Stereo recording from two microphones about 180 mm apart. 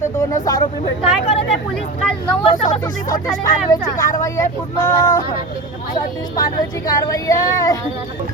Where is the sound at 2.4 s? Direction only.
25° left (ahead or behind).